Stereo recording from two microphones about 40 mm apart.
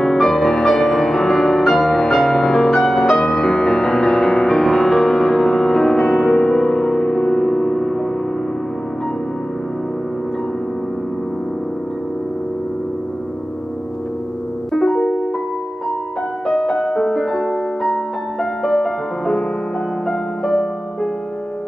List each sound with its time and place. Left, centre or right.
0.0 s music: centre
14.7 s music: centre
16.4 s music: centre